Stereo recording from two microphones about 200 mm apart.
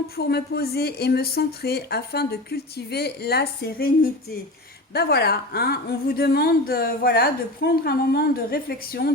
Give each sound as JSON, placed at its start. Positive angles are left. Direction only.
{"t": 0.2, "sound": "a woman's voice", "side_deg": 55}